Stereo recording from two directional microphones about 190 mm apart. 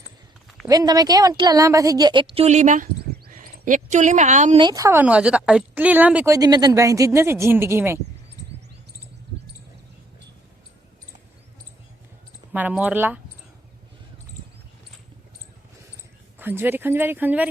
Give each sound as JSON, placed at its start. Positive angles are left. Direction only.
{"t": 0.7, "sound": "a woman's voice", "side_deg": -20}
{"t": 3.0, "sound": "a sound", "side_deg": -50}
{"t": 4.6, "sound": "a woman's voice", "side_deg": -15}
{"t": 12.5, "sound": "a woman's voice", "side_deg": -10}
{"t": 16.4, "sound": "a woman's voice", "side_deg": -10}